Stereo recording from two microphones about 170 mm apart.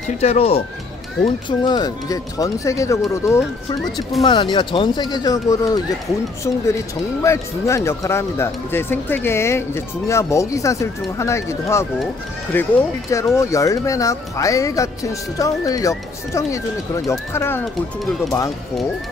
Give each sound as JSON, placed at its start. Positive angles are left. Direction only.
{"t": 0.2, "sound": "speech", "side_deg": 40}
{"t": 1.6, "sound": "speech", "side_deg": 25}
{"t": 3.3, "sound": "speech", "side_deg": 0}
{"t": 4.2, "sound": "speech", "side_deg": 25}